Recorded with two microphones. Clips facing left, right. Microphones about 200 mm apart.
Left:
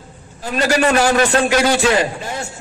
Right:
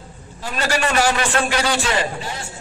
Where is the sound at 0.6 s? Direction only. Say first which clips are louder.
Left 5 dB; 40° left (ahead or behind).